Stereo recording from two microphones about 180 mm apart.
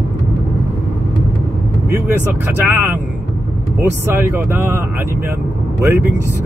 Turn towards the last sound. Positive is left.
turn(degrees=-10)  # may be behind; listen again after turning